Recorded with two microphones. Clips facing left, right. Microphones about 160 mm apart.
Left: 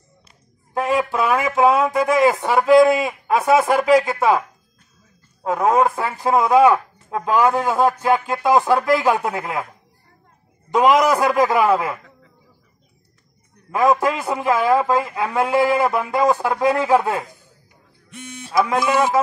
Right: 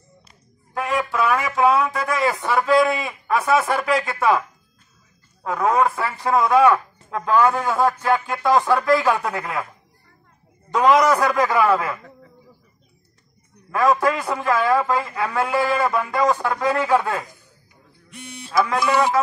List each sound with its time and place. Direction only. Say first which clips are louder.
0.7 s speech: left 3 dB; 25° left (ahead or behind)
10.7 s speech: left 1 dB; 20° left (ahead or behind)
13.7 s speech: left 1 dB; 20° left (ahead or behind)
14.7 s speech: left 3 dB; 25° left (ahead or behind)
18.5 s speech: left 1 dB; 20° left (ahead or behind)